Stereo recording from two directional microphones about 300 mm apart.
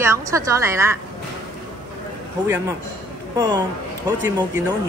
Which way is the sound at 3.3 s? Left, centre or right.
Centre.